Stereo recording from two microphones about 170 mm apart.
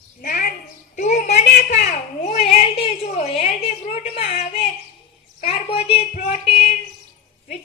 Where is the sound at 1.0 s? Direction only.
45° left (ahead or behind).